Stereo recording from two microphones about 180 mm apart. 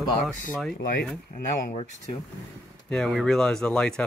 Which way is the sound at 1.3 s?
40° left (ahead or behind).